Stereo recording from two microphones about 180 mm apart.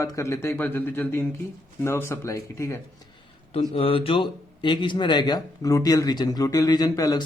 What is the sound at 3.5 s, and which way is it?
Speech, 25° left (ahead or behind).